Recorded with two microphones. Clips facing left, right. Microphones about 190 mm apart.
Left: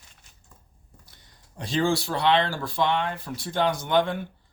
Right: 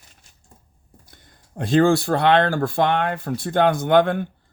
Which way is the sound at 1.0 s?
50° right (ahead or behind).